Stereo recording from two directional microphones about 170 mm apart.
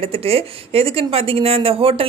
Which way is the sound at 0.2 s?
35° right (ahead or behind).